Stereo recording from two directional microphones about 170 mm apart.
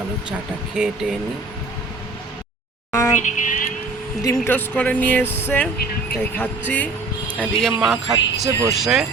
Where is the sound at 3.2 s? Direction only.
50° left (ahead or behind).